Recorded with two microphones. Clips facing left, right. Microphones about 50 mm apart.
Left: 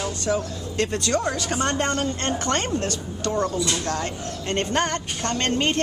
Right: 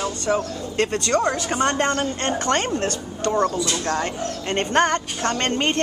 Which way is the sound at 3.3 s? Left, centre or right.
Right.